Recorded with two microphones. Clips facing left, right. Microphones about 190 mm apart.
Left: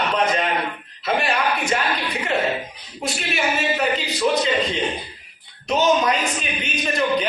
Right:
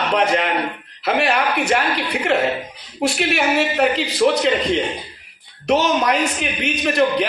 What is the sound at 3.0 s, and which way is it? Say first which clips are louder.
A man's voice: right 6 dB; 70° right (ahead or behind).